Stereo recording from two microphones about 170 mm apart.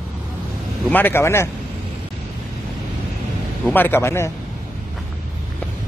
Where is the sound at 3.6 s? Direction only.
10° left (ahead or behind).